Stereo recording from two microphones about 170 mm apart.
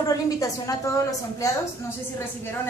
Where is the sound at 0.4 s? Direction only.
20° left (ahead or behind).